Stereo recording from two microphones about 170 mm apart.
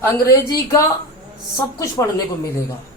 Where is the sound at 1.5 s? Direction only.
20° left (ahead or behind).